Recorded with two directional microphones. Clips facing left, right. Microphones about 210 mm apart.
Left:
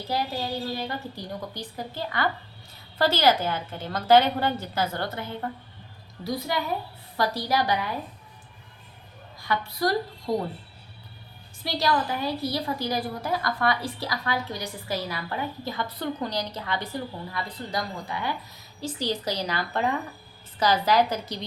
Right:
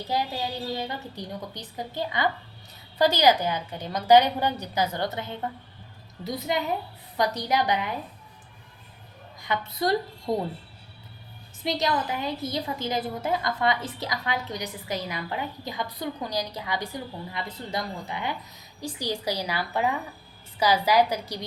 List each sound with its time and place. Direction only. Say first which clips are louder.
0.1 s a woman's voice: left 1 dB; 20° right (ahead or behind)
9.4 s a woman's voice: left 1 dB; 20° right (ahead or behind)
11.6 s a woman's voice: left 1 dB; 20° right (ahead or behind)